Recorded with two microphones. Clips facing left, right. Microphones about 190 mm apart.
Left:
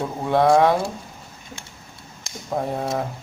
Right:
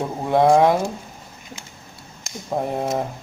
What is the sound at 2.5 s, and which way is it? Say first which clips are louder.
Speech: right 1 dB; 15° right (ahead or behind).